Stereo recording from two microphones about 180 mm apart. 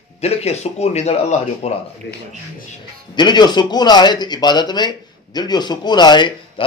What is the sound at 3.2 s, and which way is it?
Speech, 25° left (ahead or behind).